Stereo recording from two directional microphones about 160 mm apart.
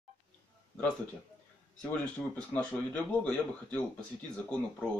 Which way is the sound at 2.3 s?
10° left (ahead or behind).